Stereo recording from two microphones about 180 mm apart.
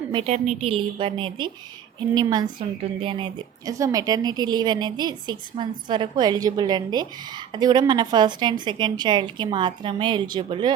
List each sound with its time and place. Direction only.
0.1 s a woman's voice: 30° right (ahead or behind)